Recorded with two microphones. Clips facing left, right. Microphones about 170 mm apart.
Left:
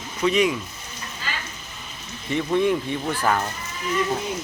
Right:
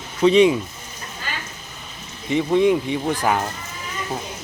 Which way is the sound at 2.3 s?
15° right (ahead or behind).